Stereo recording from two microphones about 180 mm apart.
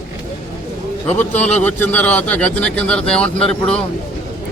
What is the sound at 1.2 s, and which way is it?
Speech, 10° left (ahead or behind).